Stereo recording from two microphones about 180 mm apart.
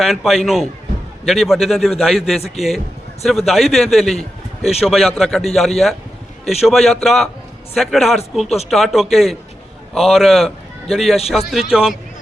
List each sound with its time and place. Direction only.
0.0 s a man's voice: centre (ahead or behind)
4.2 s a sound: 35° left (ahead or behind)
4.8 s a man's voice: centre (ahead or behind)